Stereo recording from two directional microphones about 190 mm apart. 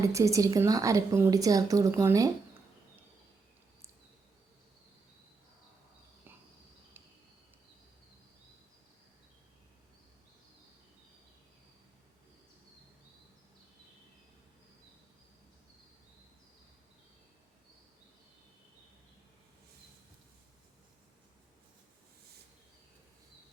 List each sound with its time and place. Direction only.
0.0 s a woman's voice: 15° right (ahead or behind)